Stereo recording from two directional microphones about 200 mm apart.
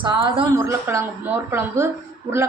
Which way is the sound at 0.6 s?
15° right (ahead or behind).